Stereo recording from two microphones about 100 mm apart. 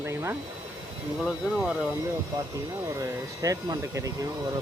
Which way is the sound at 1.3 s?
10° right (ahead or behind).